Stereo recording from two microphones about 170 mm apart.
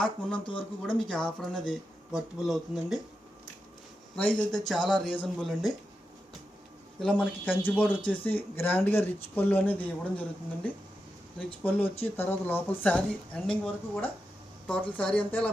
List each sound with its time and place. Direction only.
0.0 s speech: 5° left (ahead or behind)
4.1 s speech: 5° left (ahead or behind)
7.0 s speech: 5° left (ahead or behind)